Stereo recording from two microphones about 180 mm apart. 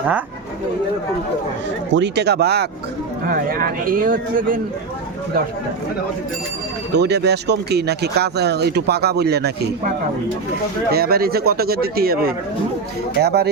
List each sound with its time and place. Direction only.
1.9 s speech: 75° right (ahead or behind)
3.2 s speech: 55° right (ahead or behind)
6.9 s speech: 70° right (ahead or behind)
10.9 s speech: 60° right (ahead or behind)